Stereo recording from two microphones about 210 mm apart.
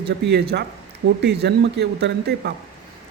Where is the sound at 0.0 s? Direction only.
50° right (ahead or behind).